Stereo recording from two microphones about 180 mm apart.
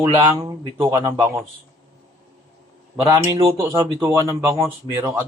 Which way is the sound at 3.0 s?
25° right (ahead or behind).